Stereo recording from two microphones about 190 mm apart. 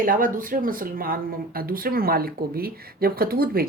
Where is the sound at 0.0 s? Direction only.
45° right (ahead or behind).